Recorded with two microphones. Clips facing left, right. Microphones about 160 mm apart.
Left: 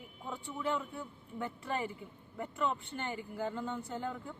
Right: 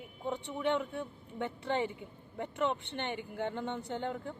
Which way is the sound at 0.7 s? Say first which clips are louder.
Right 4 dB; 85° right.